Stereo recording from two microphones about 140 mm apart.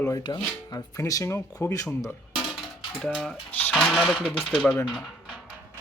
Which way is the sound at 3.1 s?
5° right (ahead or behind).